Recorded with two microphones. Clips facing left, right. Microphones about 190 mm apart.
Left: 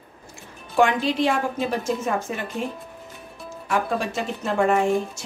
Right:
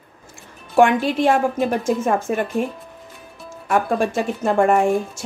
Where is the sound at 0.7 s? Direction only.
50° right (ahead or behind).